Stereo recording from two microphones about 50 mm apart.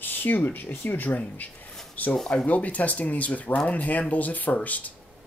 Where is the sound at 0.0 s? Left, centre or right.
Left.